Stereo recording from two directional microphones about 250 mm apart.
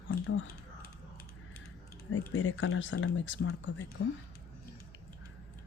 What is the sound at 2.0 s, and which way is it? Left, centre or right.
Speech, left.